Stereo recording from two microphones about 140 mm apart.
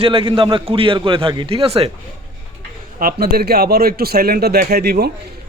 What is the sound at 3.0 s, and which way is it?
Speech, 90° right.